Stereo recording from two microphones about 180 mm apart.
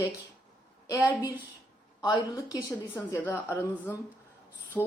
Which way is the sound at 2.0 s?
20° left (ahead or behind).